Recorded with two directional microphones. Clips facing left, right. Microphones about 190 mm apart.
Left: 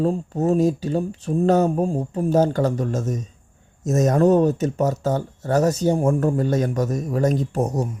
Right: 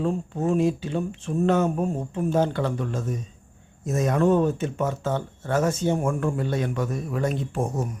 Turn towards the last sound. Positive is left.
turn(degrees=40)  # may be behind; listen again after turning